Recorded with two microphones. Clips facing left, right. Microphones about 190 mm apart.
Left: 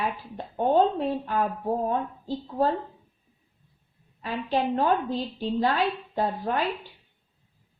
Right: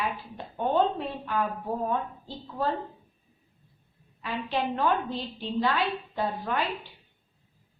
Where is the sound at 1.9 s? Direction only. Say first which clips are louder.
Left 3 dB; 40° left (ahead or behind).